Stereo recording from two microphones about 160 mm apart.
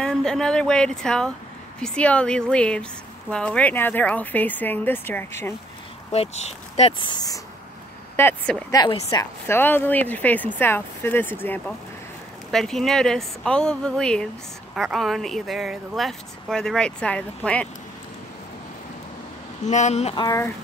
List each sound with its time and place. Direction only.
0.0 s speech: 5° left (ahead or behind)
6.1 s speech: 40° left (ahead or behind)
8.2 s speech: 10° left (ahead or behind)
8.7 s speech: 25° left (ahead or behind); by 17.6 s 10° left (ahead or behind)
19.6 s speech: 50° left (ahead or behind)
20.2 s a sound: 20° left (ahead or behind)